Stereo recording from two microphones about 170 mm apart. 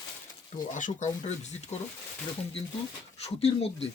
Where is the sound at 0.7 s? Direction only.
45° left (ahead or behind).